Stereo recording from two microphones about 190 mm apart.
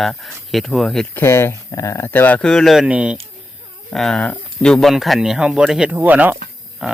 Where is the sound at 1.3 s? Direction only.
15° left (ahead or behind).